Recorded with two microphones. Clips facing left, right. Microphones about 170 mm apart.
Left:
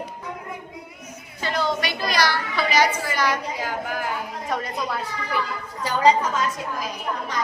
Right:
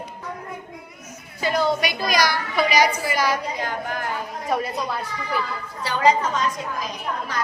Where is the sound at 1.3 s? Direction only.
10° right (ahead or behind).